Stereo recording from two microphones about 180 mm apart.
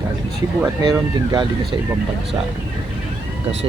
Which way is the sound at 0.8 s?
25° right (ahead or behind).